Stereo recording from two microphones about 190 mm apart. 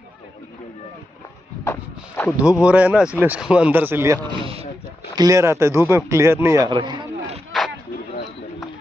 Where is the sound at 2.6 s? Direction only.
5° right (ahead or behind).